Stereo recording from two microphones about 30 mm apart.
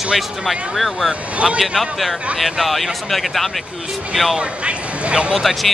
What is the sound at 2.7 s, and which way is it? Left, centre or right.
Speech, centre.